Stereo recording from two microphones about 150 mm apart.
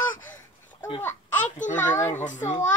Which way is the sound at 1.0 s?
10° left (ahead or behind).